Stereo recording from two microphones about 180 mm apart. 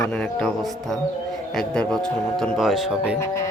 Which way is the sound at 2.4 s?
Centre (ahead or behind).